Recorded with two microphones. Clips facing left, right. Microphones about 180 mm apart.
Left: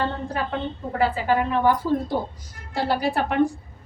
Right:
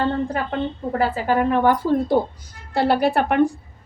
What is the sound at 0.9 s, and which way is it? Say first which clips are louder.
Speech: right 1 dB; 45° right (ahead or behind).